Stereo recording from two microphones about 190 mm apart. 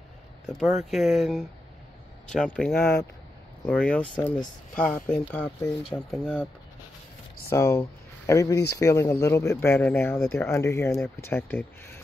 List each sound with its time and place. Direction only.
0.5 s speech: centre (ahead or behind)
2.5 s speech: 5° left (ahead or behind)
7.4 s speech: 15° left (ahead or behind)